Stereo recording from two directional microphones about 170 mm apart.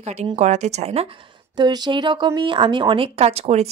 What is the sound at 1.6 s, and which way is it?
A woman's voice, 25° right (ahead or behind).